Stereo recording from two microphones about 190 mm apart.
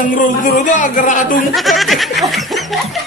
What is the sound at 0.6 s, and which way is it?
Speech, 40° left (ahead or behind).